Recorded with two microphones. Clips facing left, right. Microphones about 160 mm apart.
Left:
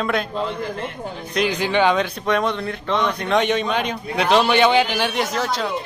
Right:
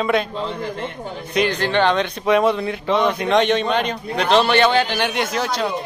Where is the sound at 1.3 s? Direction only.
5° left (ahead or behind).